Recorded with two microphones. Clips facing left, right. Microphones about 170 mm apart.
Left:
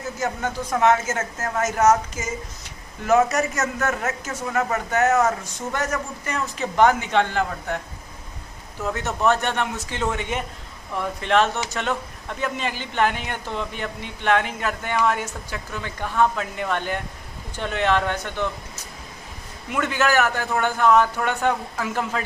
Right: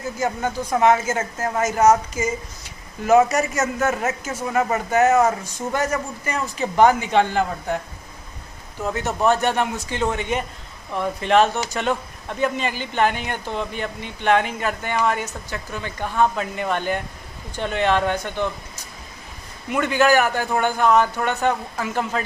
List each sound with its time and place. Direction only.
0.2 s a man's voice: 10° right (ahead or behind)
5.8 s speech: centre (ahead or behind)
9.2 s speech: 5° right (ahead or behind)
19.7 s speech: centre (ahead or behind)